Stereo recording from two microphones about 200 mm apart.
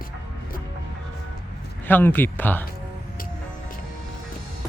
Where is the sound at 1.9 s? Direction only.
10° left (ahead or behind).